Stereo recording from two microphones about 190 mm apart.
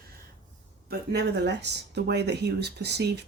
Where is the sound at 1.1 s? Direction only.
60° right (ahead or behind).